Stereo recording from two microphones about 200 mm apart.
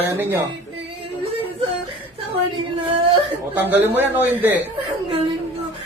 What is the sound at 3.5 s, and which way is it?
A man's voice, 10° right (ahead or behind).